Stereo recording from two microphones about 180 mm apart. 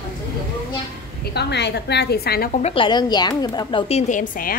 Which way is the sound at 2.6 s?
30° left (ahead or behind).